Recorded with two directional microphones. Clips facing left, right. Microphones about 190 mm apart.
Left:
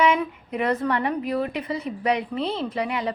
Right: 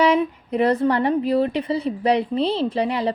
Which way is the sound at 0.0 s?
35° right (ahead or behind).